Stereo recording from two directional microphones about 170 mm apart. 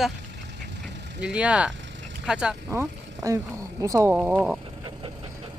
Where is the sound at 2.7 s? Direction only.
20° right (ahead or behind).